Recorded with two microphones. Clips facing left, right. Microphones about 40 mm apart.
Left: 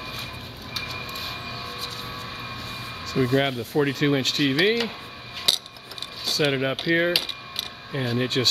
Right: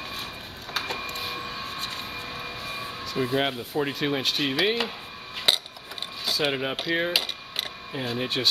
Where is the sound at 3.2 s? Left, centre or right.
Centre.